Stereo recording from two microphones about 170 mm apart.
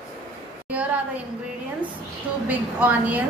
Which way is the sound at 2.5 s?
10° right (ahead or behind).